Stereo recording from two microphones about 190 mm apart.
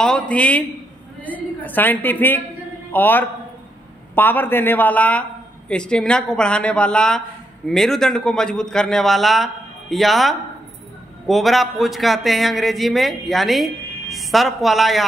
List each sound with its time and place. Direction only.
0.0 s a man's voice: 5° left (ahead or behind)